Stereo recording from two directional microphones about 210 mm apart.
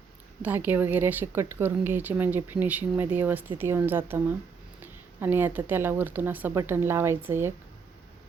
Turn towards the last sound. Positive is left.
turn(degrees=-10)  # may be behind; listen again after turning